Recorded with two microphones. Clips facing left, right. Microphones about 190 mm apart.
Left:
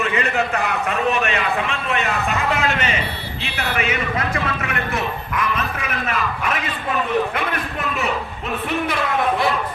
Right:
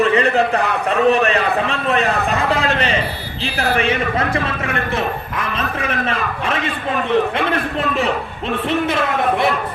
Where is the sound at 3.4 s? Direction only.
35° right (ahead or behind).